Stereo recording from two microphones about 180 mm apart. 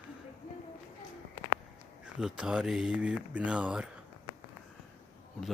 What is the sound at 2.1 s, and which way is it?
Speech, 5° right (ahead or behind).